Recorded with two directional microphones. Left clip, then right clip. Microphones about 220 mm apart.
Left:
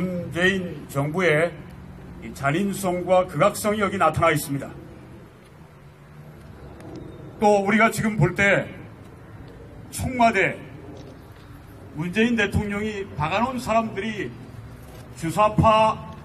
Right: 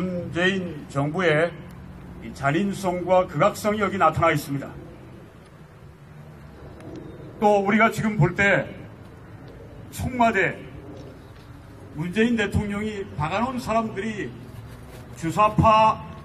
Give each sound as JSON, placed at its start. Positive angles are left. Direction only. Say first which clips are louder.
{"t": 0.3, "sound": "a man's voice", "louder": "left 2 dB", "side_deg": 45}
{"t": 7.3, "sound": "a man's voice", "louder": "left 1 dB", "side_deg": 40}
{"t": 10.0, "sound": "a man's voice", "louder": "left 1 dB", "side_deg": 40}
{"t": 12.0, "sound": "a man's voice", "louder": "left 1 dB", "side_deg": 30}
{"t": 15.2, "sound": "a man's voice", "louder": "even", "side_deg": 40}